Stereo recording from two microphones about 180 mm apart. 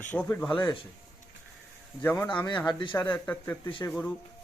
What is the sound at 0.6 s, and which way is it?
Speech, 25° left (ahead or behind).